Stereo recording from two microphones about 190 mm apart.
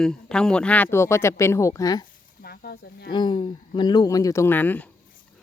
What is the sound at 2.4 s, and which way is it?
Speech, 55° left (ahead or behind).